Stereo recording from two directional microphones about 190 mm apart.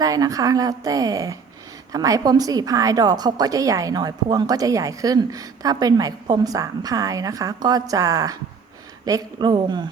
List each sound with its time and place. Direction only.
0.0 s a woman's voice: 20° right (ahead or behind)